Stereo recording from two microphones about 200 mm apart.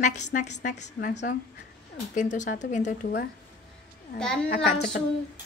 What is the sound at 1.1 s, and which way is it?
Speech, 60° left (ahead or behind).